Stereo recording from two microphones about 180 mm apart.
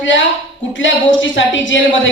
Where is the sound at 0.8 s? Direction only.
90° left.